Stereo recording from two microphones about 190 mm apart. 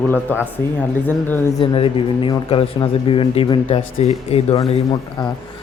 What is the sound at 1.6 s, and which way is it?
Speech, 25° left (ahead or behind).